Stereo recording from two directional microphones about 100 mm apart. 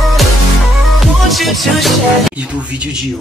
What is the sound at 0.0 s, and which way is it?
Music, centre (ahead or behind).